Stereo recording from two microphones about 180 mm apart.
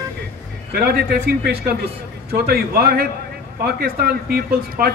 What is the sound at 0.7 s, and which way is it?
Speech, 60° right (ahead or behind).